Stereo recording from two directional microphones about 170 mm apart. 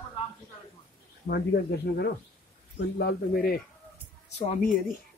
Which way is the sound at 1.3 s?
65° left (ahead or behind).